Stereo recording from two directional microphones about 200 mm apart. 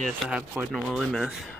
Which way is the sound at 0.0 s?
Centre (ahead or behind).